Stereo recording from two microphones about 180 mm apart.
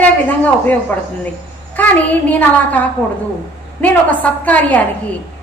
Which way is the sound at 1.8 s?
10° left (ahead or behind).